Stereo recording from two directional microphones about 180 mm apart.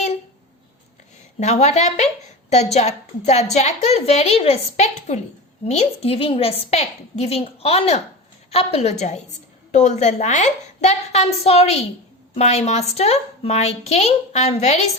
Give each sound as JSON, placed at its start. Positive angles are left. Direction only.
{"t": 1.4, "sound": "a woman's voice", "side_deg": 40}